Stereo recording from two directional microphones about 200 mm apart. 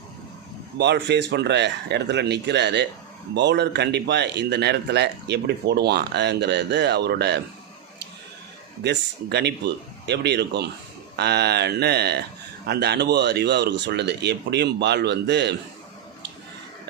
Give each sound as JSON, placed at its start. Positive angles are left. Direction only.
{"t": 0.8, "sound": "speech", "side_deg": -60}
{"t": 8.8, "sound": "speech", "side_deg": -60}